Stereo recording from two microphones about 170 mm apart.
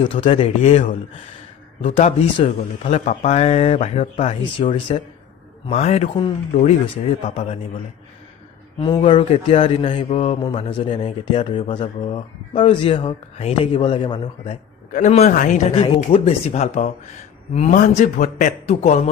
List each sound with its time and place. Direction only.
0.0 s speech: 35° left (ahead or behind)
2.0 s speech: 40° left (ahead or behind)
7.3 s speech: 40° left (ahead or behind)
9.0 s a man's voice: 35° left (ahead or behind)